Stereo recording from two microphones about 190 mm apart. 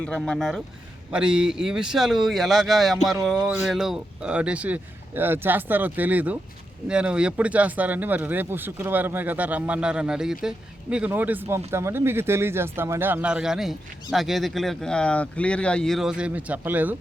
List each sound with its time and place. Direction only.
0.0 s speech: 5° left (ahead or behind)